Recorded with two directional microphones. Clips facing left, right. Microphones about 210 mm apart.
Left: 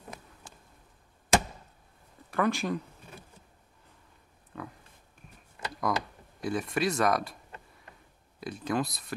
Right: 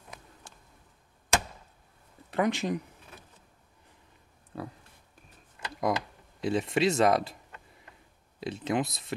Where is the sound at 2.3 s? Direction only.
20° right (ahead or behind).